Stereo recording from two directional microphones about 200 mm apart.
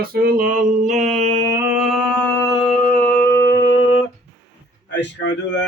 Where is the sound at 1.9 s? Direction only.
Centre (ahead or behind).